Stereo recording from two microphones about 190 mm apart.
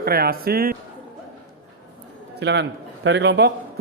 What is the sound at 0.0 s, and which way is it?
Speech, 55° right (ahead or behind).